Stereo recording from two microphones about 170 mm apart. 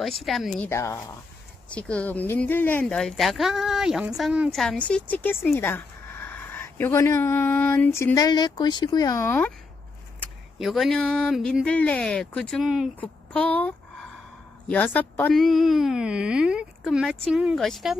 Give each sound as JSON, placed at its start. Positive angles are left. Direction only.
{"t": 0.0, "sound": "speech", "side_deg": 0}
{"t": 0.7, "sound": "a woman's voice", "side_deg": 15}
{"t": 10.6, "sound": "speech", "side_deg": 0}
{"t": 13.0, "sound": "speech", "side_deg": 5}